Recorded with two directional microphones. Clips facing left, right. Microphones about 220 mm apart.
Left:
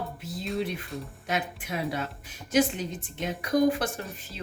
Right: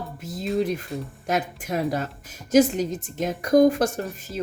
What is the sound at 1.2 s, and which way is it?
A woman's voice, 40° right (ahead or behind).